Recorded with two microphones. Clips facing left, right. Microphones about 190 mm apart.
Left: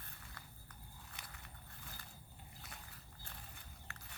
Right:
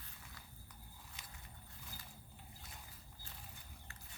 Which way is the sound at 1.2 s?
65° left (ahead or behind).